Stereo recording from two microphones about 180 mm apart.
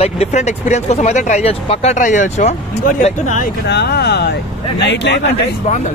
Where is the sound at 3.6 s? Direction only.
65° left (ahead or behind).